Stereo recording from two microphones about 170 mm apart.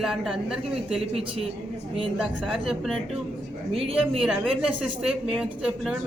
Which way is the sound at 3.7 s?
35° right (ahead or behind).